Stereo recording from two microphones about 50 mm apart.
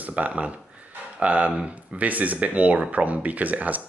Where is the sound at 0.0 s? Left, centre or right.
Right.